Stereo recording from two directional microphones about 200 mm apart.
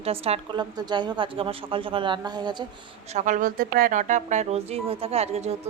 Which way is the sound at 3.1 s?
40° right (ahead or behind).